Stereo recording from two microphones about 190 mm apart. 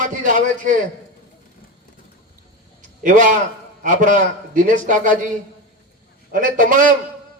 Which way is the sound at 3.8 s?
40° right (ahead or behind).